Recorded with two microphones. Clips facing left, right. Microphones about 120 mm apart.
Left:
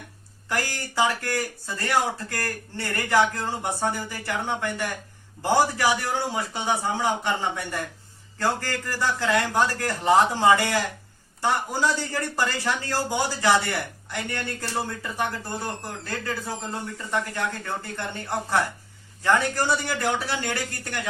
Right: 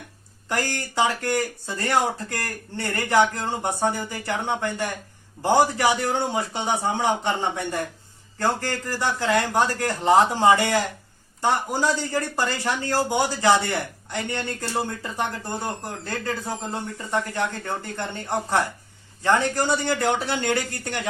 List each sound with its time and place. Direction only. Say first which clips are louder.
0.4 s a man's voice: right 2 dB; 20° right (ahead or behind)